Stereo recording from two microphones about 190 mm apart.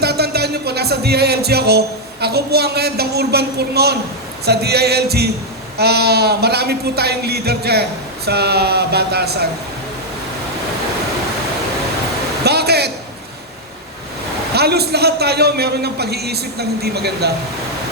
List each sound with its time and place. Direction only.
0.0 s music: 55° right (ahead or behind)
2.2 s speech: 55° right (ahead or behind)
12.5 s speech: 60° right (ahead or behind)
14.5 s speech: 60° right (ahead or behind)